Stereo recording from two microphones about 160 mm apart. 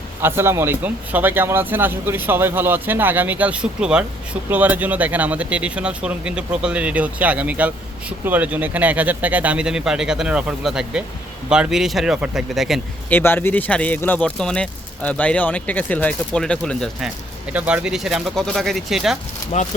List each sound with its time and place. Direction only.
0.2 s speech: 15° right (ahead or behind)
13.1 s a man's voice: 10° left (ahead or behind)
17.5 s speech: 10° right (ahead or behind)
19.5 s speech: 50° left (ahead or behind)